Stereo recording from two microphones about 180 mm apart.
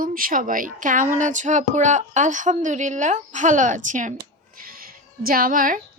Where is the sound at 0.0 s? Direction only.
50° right (ahead or behind).